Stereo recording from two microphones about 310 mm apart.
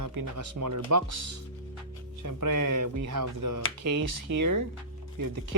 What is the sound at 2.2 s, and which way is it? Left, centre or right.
Speech, right.